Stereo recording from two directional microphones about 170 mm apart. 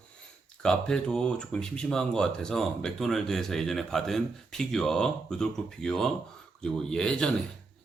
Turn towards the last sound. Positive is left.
turn(degrees=5)  # may be behind; listen again after turning